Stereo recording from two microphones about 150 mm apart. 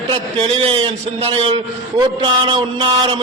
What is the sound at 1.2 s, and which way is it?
A man's voice, 40° right (ahead or behind).